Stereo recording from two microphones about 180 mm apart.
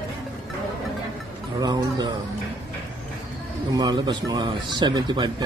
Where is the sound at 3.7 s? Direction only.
25° right (ahead or behind).